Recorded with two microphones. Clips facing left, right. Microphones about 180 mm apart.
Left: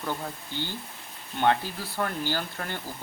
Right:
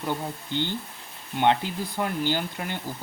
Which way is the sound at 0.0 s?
20° right (ahead or behind).